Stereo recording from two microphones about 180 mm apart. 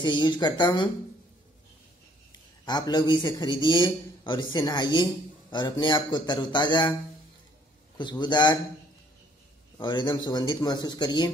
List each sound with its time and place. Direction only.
0.0 s a man's voice: 25° left (ahead or behind)
2.6 s a man's voice: 25° left (ahead or behind)
8.0 s a man's voice: 25° left (ahead or behind)
9.8 s a man's voice: 25° left (ahead or behind)